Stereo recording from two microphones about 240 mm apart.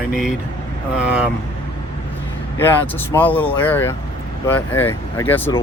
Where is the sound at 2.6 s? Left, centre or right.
Centre.